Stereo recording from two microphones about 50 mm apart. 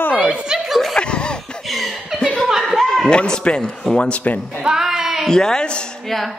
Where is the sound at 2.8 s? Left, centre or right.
Centre.